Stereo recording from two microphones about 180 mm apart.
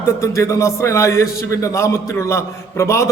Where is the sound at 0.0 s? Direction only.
15° left (ahead or behind).